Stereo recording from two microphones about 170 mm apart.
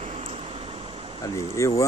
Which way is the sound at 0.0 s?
40° right (ahead or behind).